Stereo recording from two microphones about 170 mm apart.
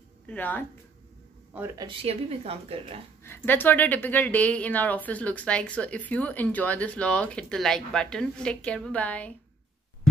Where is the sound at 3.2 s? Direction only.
10° left (ahead or behind).